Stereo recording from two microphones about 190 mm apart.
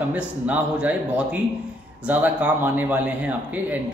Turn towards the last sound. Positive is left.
turn(degrees=-10)  # may be behind; listen again after turning